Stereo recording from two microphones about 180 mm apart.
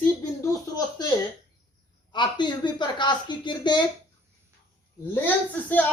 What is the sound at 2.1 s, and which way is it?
A woman's voice, 25° left (ahead or behind).